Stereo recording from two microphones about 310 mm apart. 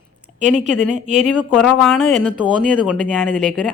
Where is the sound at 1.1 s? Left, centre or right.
Centre.